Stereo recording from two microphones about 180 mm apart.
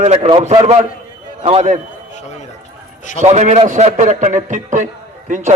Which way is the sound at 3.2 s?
40° right (ahead or behind).